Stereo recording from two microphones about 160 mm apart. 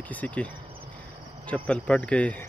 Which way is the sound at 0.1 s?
10° left (ahead or behind).